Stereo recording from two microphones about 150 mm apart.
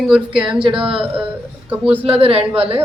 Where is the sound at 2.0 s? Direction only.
40° right (ahead or behind).